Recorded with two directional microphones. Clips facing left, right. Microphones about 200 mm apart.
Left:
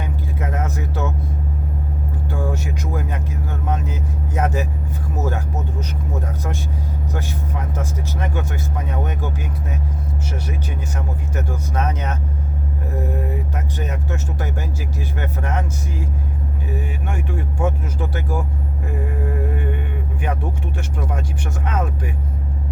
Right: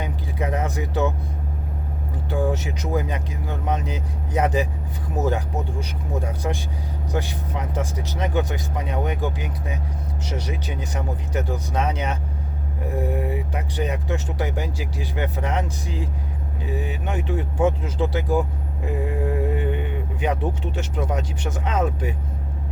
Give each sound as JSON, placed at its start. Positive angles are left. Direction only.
{"t": 0.0, "sound": "vehicle", "side_deg": -15}
{"t": 2.3, "sound": "speech", "side_deg": -20}
{"t": 19.2, "sound": "music", "side_deg": -20}
{"t": 20.2, "sound": "speech", "side_deg": -20}